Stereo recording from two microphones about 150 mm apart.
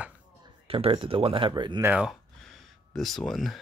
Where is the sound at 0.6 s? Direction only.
40° right (ahead or behind).